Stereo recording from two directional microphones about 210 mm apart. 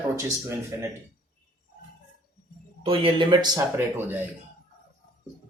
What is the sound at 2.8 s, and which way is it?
Speech, 25° right (ahead or behind).